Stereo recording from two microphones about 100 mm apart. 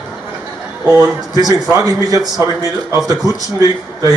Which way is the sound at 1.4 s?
40° right (ahead or behind).